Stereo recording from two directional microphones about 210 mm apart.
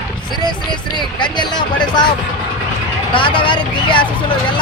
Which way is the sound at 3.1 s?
25° left (ahead or behind).